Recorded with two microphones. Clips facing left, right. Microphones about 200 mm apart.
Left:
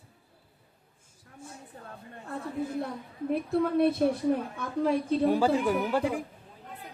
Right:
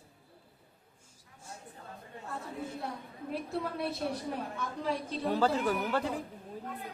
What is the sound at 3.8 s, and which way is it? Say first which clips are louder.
A woman's voice: left 10 dB; 55° left (ahead or behind).